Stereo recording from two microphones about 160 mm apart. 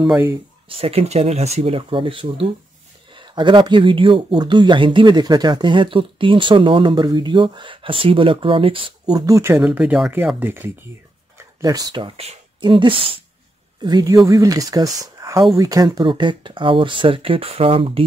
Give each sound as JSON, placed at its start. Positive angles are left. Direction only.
{"t": 0.1, "sound": "speech", "side_deg": -15}
{"t": 0.7, "sound": "speech", "side_deg": -35}
{"t": 11.3, "sound": "speech", "side_deg": -20}